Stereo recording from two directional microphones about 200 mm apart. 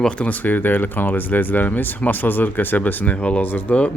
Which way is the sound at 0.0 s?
5° left (ahead or behind).